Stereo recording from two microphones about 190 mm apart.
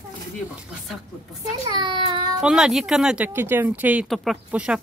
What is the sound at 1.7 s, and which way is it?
Child singing, 25° right (ahead or behind).